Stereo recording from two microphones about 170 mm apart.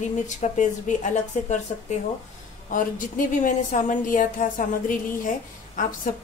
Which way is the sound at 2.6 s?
50° left (ahead or behind).